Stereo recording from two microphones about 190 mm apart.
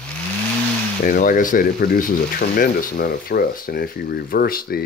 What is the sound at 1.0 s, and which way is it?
Speech, 45° left (ahead or behind).